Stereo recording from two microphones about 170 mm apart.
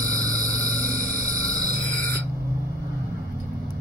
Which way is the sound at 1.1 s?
20° right (ahead or behind).